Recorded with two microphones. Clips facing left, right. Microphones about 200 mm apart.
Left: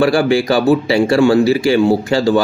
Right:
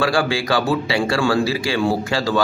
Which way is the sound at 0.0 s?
25° left (ahead or behind).